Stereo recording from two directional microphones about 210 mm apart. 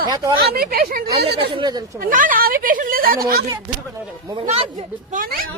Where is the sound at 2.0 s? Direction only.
40° right (ahead or behind).